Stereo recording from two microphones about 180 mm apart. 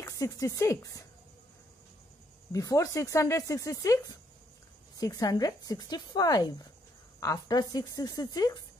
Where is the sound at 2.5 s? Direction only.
20° left (ahead or behind).